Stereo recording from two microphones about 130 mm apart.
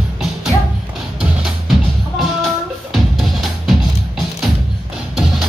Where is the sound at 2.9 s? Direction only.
Centre (ahead or behind).